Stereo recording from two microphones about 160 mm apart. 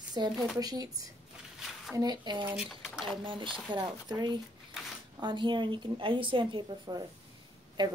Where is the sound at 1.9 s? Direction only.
25° right (ahead or behind).